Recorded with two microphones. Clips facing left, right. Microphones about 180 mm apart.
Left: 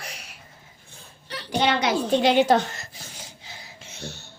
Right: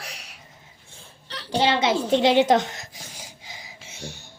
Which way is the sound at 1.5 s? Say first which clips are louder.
Right 1 dB; 25° right (ahead or behind).